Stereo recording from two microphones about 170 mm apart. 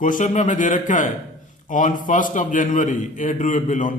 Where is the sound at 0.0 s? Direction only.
50° left (ahead or behind).